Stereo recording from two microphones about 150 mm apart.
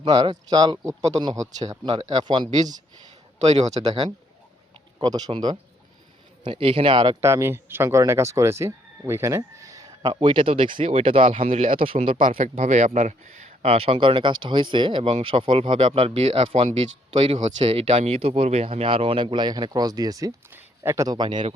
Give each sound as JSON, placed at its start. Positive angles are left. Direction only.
{"t": 0.0, "sound": "speech", "side_deg": -30}
{"t": 3.5, "sound": "speech", "side_deg": -45}
{"t": 4.9, "sound": "speech", "side_deg": -25}
{"t": 7.2, "sound": "speech", "side_deg": -20}
{"t": 12.4, "sound": "speech", "side_deg": -50}
{"t": 13.7, "sound": "speech", "side_deg": -40}